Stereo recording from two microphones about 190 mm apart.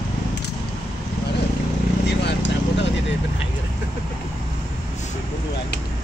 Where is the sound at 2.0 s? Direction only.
65° left (ahead or behind).